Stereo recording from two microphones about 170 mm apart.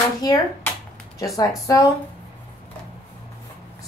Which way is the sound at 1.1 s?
20° left (ahead or behind).